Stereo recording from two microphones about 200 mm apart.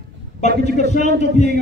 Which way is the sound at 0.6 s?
35° left (ahead or behind).